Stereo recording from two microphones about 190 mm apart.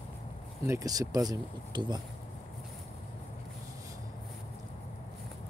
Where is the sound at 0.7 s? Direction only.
20° right (ahead or behind).